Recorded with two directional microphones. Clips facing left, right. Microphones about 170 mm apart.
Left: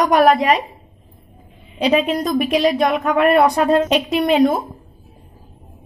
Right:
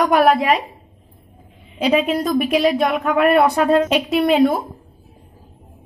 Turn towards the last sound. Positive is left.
turn(degrees=0)  # may be behind; listen again after turning